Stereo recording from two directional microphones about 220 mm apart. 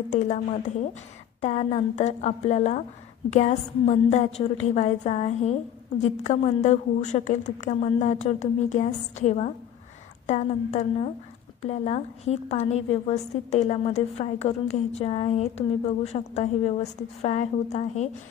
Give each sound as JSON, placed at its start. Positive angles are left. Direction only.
{"t": 0.1, "sound": "a woman's voice", "side_deg": 35}